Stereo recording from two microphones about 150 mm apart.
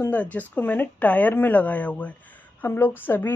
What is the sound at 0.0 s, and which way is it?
Speech, 10° left (ahead or behind).